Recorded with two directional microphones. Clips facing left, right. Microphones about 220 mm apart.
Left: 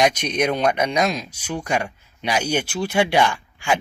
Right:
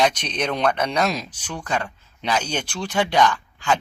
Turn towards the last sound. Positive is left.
turn(degrees=10)  # may be behind; listen again after turning